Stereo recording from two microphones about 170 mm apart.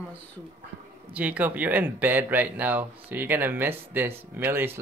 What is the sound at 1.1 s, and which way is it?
Speech, 10° right (ahead or behind).